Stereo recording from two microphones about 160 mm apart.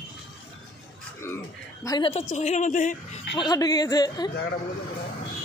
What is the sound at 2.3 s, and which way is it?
Speech, 45° left (ahead or behind).